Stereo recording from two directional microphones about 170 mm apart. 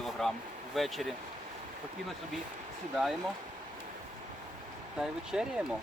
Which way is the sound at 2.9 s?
Centre (ahead or behind).